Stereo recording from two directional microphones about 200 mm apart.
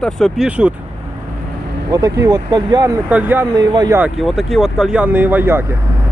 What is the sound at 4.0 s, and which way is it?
Speech, centre (ahead or behind).